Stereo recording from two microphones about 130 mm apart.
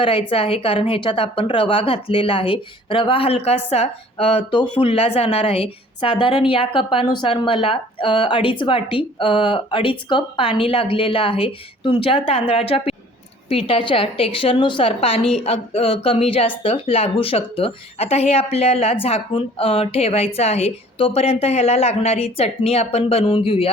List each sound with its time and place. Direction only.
0.0 s speech: 45° left (ahead or behind)